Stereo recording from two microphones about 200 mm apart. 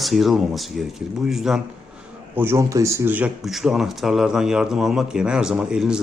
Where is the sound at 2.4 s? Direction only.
15° right (ahead or behind).